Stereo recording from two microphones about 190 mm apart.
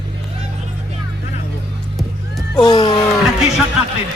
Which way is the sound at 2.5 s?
20° left (ahead or behind).